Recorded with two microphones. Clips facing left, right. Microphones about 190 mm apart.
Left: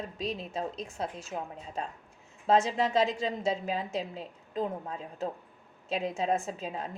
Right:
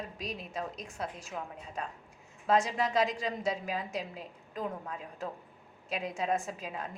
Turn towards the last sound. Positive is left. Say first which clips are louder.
# left 3 dB
turn(degrees=30)  # may be behind; listen again after turning